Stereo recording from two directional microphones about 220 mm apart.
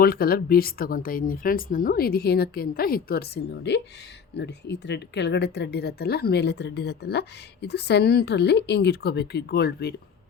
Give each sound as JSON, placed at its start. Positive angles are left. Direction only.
{"t": 0.0, "sound": "speech", "side_deg": 45}